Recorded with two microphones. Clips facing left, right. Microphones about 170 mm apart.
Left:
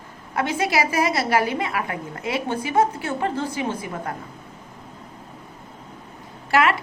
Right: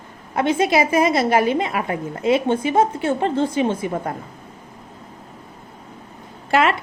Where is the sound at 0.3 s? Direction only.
25° right (ahead or behind).